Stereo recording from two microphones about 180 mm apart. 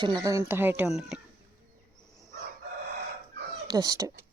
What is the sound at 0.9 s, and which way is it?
Speech, centre (ahead or behind).